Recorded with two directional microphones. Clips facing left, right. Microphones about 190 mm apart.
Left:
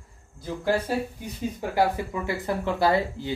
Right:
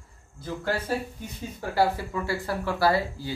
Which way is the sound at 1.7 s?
20° left (ahead or behind).